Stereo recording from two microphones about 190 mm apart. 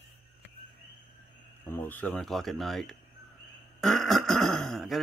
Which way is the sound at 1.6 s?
10° left (ahead or behind).